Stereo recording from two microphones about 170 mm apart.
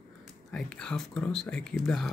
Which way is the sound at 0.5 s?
5° left (ahead or behind).